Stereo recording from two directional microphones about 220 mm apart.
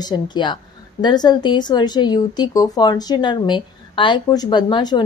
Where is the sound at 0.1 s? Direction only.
20° left (ahead or behind).